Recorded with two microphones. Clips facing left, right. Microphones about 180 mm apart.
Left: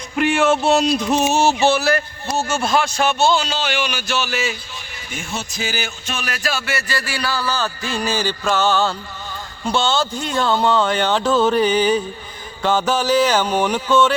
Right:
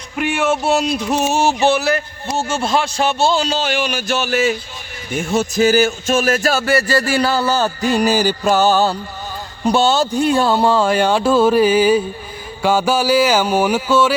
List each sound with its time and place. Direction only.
0.2 s music: 5° right (ahead or behind)
2.3 s a man's voice: 25° right (ahead or behind); by 7.2 s 45° right (ahead or behind)
7.2 s a man's voice: 25° right (ahead or behind)
7.6 s a man's voice: 40° right (ahead or behind)
10.2 s music: 10° right (ahead or behind)